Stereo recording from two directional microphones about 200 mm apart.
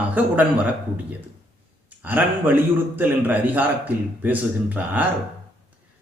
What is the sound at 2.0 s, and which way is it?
A man's voice, 10° right (ahead or behind).